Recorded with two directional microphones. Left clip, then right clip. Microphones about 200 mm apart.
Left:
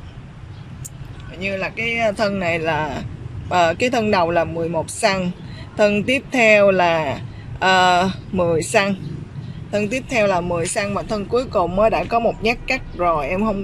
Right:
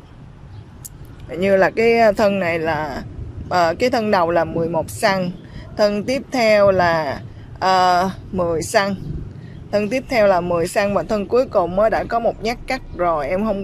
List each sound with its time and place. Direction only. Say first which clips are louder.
1.3 s speech: right 9 dB; 35° right (ahead or behind)
2.0 s speech: right 2 dB; 15° right (ahead or behind)
2.3 s speech: right 1 dB; 5° right (ahead or behind)